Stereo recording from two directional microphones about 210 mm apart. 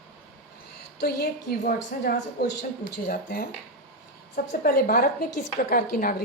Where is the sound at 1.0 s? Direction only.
50° left (ahead or behind).